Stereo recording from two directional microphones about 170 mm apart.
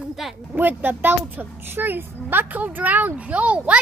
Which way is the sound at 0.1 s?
Centre (ahead or behind).